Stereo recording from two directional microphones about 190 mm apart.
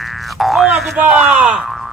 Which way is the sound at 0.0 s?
Centre (ahead or behind).